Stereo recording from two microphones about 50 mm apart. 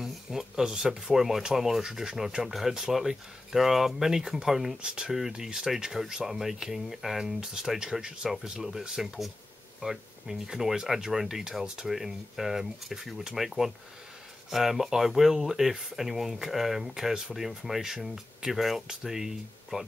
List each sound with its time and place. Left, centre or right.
0.0 s a sound: centre
1.1 s speech: centre
4.8 s speech: centre
5.4 s speech: centre